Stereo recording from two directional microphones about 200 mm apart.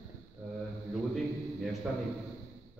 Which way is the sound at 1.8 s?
Centre (ahead or behind).